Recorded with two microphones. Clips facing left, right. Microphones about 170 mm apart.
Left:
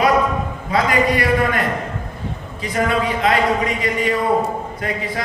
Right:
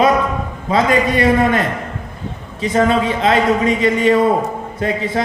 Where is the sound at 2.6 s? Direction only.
25° right (ahead or behind).